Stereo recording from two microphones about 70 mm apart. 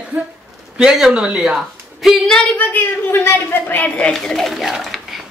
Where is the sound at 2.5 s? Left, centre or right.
Left.